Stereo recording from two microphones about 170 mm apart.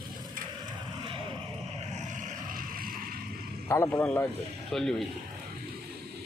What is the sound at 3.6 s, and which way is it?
Speech, 15° left (ahead or behind).